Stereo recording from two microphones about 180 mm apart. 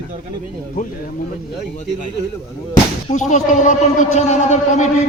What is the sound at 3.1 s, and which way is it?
A man's voice, 40° left (ahead or behind).